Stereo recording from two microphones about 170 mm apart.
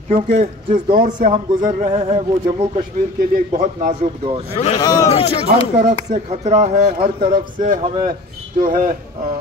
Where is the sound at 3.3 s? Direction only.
55° right (ahead or behind).